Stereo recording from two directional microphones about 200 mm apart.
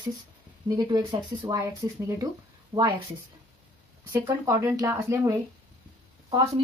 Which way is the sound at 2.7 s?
15° right (ahead or behind).